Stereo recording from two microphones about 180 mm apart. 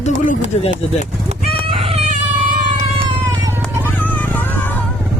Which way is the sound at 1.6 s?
35° right (ahead or behind).